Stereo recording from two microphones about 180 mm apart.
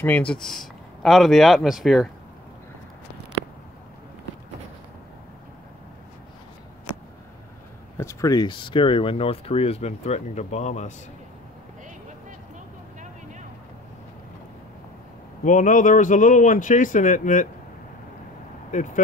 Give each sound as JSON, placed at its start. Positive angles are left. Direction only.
{"t": 0.0, "sound": "speech", "side_deg": 10}
{"t": 8.0, "sound": "speech", "side_deg": 15}
{"t": 15.4, "sound": "speech", "side_deg": 45}